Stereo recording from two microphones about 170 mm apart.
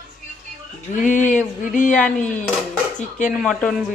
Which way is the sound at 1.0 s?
50° left (ahead or behind).